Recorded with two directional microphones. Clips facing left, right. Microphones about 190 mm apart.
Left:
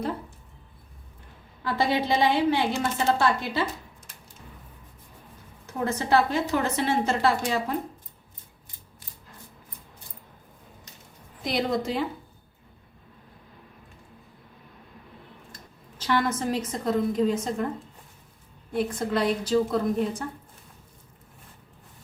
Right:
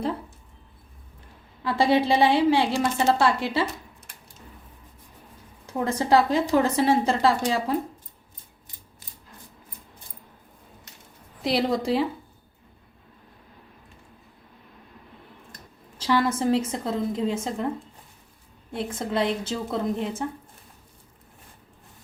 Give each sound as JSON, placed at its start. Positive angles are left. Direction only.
{"t": 1.6, "sound": "a woman's voice", "side_deg": -30}
{"t": 5.6, "sound": "a woman's voice", "side_deg": -30}
{"t": 11.4, "sound": "a woman's voice", "side_deg": -30}
{"t": 16.0, "sound": "a woman's voice", "side_deg": -30}
{"t": 18.7, "sound": "a woman's voice", "side_deg": -25}